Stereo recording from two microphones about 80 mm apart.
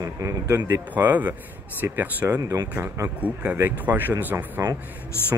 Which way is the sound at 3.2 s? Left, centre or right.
Centre.